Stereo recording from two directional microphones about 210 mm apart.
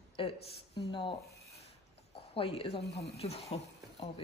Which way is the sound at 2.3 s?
25° left (ahead or behind).